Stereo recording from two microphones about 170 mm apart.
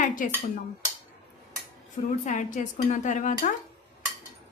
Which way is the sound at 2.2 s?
45° left (ahead or behind).